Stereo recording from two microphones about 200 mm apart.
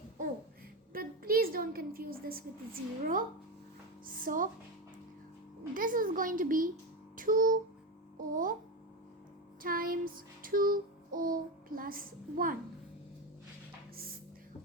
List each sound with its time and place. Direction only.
0.9 s a woman's voice: 45° right (ahead or behind)
5.7 s child singing: 45° right (ahead or behind)
9.6 s child singing: 45° right (ahead or behind)